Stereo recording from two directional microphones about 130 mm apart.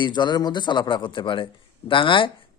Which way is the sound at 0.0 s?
35° left (ahead or behind).